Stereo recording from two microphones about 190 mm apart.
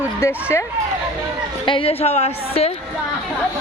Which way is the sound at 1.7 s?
30° left (ahead or behind).